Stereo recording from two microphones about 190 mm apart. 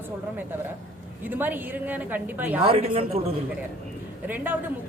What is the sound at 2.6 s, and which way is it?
Speech, 30° right (ahead or behind).